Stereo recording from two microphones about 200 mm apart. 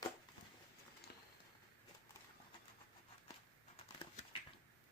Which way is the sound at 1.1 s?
55° left (ahead or behind).